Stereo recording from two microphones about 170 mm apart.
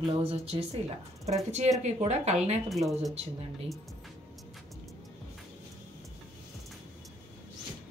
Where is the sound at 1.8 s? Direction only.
40° right (ahead or behind).